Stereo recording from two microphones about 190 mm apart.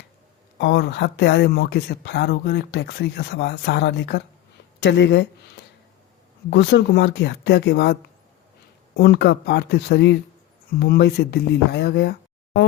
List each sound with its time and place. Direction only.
0.6 s speech: 65° left (ahead or behind)
9.0 s speech: 60° left (ahead or behind)